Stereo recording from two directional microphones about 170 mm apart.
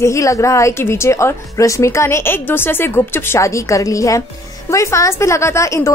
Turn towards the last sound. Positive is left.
turn(degrees=15)  # may be behind; listen again after turning